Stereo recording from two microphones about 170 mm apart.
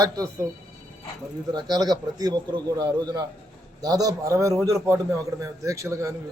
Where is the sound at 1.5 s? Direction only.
25° right (ahead or behind).